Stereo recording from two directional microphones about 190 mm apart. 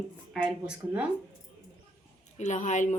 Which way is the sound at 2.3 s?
40° left (ahead or behind).